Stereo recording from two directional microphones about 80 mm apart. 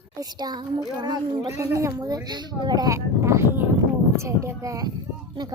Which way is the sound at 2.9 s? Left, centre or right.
Right.